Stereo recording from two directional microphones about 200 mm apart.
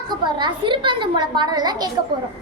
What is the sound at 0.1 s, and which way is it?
A woman's voice, 20° right (ahead or behind).